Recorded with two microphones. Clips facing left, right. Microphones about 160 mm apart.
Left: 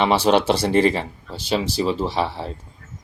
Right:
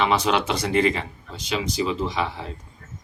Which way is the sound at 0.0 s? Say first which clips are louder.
Left 4 dB; 30° left (ahead or behind).